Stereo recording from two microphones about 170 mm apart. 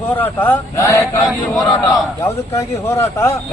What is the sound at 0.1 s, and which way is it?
A man's voice, 10° left (ahead or behind).